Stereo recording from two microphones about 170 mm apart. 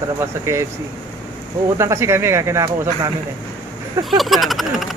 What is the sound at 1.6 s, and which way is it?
Speech, 15° right (ahead or behind).